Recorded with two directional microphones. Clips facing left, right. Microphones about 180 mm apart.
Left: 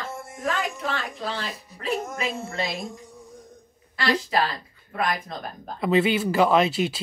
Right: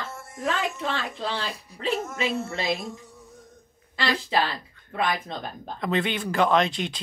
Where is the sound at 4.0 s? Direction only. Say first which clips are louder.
Left 1 dB; 25° right (ahead or behind).